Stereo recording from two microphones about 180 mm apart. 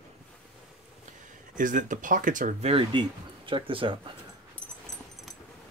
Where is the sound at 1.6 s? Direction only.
45° right (ahead or behind); by 4.0 s 30° right (ahead or behind).